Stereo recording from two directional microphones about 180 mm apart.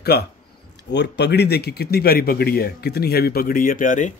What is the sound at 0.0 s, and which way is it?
Speech, 60° left (ahead or behind).